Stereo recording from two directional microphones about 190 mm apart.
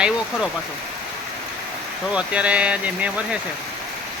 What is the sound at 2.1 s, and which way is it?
Speech, 5° right (ahead or behind).